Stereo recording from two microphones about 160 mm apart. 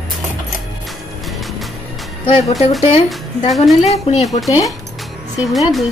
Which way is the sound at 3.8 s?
40° left (ahead or behind).